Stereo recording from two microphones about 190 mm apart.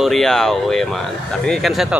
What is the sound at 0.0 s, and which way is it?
Speech, centre (ahead or behind).